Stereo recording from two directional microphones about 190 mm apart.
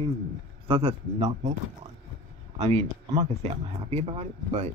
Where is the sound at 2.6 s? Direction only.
35° right (ahead or behind).